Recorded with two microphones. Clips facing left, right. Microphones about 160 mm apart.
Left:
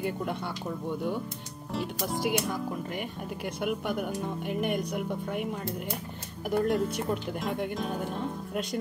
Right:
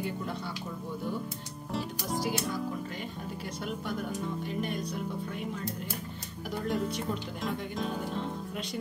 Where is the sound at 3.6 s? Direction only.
65° left (ahead or behind).